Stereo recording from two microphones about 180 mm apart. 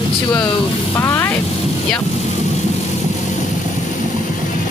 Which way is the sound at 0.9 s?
15° left (ahead or behind).